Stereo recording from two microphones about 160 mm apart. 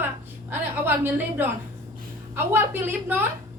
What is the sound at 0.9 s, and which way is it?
A woman's voice, 15° right (ahead or behind).